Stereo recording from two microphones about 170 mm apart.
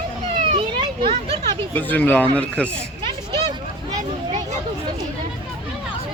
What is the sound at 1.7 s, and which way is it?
Speech, 10° left (ahead or behind).